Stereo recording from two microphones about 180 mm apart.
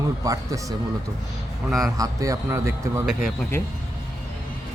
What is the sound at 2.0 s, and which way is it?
A man's voice, 20° right (ahead or behind).